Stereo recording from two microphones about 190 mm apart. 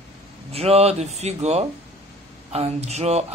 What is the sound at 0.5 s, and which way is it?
A man's voice, 30° right (ahead or behind).